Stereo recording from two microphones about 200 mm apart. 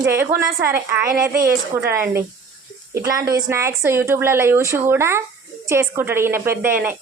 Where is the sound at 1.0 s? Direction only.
45° right (ahead or behind).